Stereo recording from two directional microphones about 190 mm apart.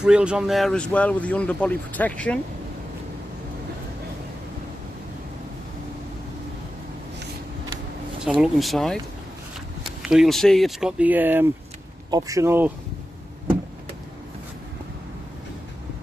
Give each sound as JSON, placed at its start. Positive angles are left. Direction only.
{"t": 0.0, "sound": "speech", "side_deg": -5}
{"t": 8.2, "sound": "speech", "side_deg": -5}